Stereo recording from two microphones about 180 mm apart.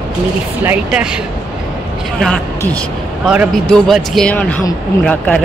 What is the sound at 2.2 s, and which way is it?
Speech, 5° left (ahead or behind).